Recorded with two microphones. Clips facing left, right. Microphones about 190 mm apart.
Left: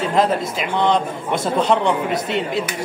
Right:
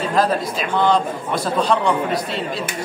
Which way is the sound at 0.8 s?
20° left (ahead or behind).